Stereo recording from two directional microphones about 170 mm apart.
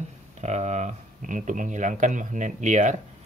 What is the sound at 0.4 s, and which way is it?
Speech, 40° right (ahead or behind).